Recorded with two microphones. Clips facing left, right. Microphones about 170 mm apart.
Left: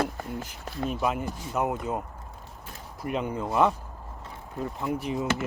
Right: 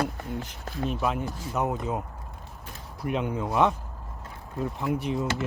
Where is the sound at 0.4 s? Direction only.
Centre (ahead or behind).